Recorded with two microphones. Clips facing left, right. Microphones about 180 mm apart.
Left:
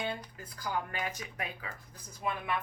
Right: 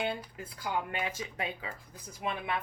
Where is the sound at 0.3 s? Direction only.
25° right (ahead or behind).